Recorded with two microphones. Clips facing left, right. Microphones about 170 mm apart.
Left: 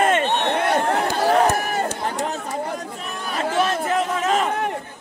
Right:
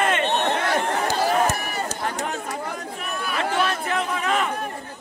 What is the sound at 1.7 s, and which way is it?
Run, 45° left (ahead or behind).